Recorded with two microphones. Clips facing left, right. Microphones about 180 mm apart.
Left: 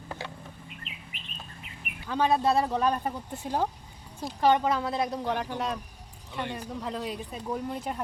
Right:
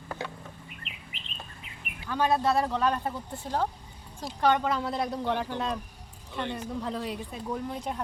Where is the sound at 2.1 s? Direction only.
20° left (ahead or behind).